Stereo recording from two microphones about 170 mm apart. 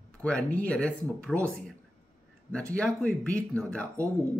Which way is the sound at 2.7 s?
5° left (ahead or behind).